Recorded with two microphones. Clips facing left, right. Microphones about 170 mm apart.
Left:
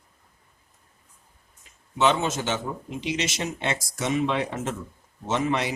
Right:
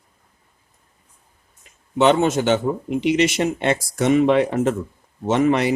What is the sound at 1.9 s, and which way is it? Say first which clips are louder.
Speech: right 7 dB; 60° right (ahead or behind).